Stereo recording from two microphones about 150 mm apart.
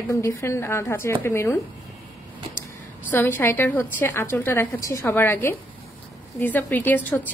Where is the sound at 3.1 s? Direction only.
15° left (ahead or behind).